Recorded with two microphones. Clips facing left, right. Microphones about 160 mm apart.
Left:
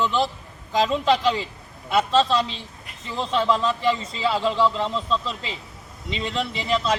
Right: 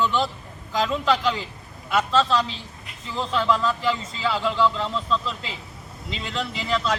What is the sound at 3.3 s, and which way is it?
Speech, 30° left (ahead or behind).